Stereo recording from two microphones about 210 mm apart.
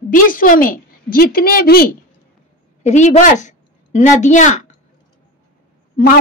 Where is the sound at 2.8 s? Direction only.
35° left (ahead or behind).